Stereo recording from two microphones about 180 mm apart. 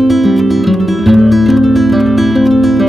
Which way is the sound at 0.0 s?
Centre (ahead or behind).